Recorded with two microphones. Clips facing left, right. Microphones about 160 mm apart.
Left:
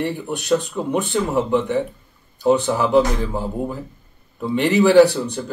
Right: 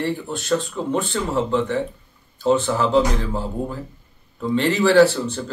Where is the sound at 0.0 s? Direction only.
20° left (ahead or behind).